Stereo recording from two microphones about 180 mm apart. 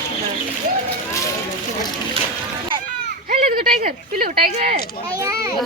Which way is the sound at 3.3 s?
50° right (ahead or behind).